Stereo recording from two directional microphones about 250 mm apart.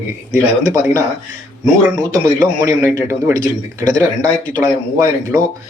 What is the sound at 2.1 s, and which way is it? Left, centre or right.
A man's voice, centre.